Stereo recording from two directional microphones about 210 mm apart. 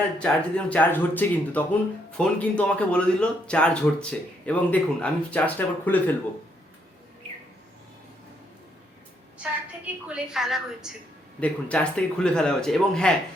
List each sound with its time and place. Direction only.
0.2 s speech: 5° left (ahead or behind)
9.4 s speech: 5° right (ahead or behind)